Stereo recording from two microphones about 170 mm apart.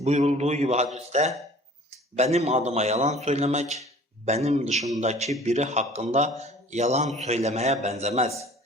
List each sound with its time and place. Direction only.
0.0 s a man's voice: 40° right (ahead or behind)